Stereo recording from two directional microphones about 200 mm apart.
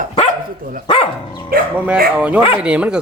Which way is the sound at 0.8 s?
25° left (ahead or behind).